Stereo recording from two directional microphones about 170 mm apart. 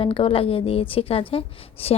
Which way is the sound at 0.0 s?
30° left (ahead or behind).